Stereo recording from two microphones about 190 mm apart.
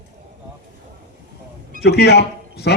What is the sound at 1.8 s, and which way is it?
Speech, 60° left (ahead or behind).